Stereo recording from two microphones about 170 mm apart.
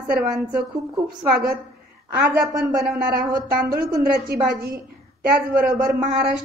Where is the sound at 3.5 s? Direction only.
60° right (ahead or behind).